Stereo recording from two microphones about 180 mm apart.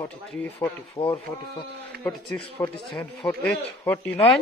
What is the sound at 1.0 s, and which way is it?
Speech, 25° left (ahead or behind).